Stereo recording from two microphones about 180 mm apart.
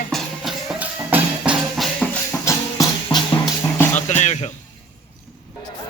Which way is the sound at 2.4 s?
15° left (ahead or behind).